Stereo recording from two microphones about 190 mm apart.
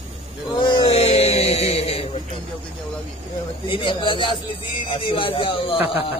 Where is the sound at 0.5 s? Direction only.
25° left (ahead or behind).